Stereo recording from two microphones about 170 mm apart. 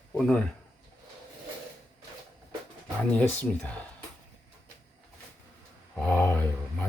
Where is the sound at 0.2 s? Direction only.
5° left (ahead or behind).